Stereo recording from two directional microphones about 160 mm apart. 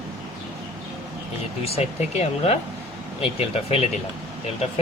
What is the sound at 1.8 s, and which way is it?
Speech, 40° left (ahead or behind).